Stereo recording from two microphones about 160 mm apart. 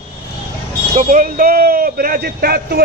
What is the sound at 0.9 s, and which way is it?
A man's voice, 55° right (ahead or behind).